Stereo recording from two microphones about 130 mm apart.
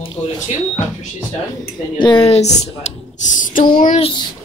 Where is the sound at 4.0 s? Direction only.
40° left (ahead or behind).